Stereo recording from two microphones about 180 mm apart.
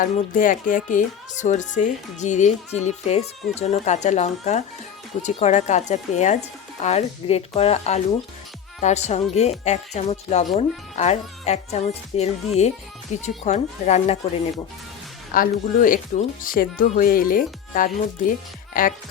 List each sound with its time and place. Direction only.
0.0 s speech: 50° left (ahead or behind)
15.3 s speech: 50° left (ahead or behind)